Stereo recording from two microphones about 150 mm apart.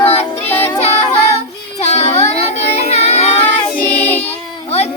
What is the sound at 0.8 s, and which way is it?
Speech, 45° left (ahead or behind).